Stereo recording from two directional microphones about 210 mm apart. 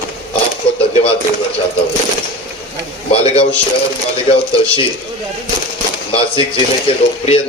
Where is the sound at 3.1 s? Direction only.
30° left (ahead or behind).